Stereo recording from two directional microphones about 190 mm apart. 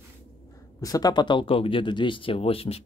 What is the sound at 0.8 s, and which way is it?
Speech, 20° left (ahead or behind).